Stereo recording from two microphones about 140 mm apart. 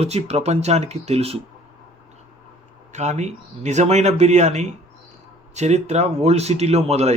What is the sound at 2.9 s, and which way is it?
Speech, 55° right (ahead or behind).